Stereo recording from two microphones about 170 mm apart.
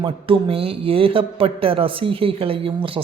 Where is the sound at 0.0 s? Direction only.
35° right (ahead or behind).